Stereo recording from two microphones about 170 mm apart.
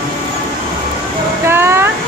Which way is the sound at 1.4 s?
15° right (ahead or behind).